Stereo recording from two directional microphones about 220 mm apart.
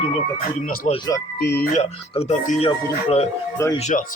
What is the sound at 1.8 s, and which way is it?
Speech, 30° left (ahead or behind).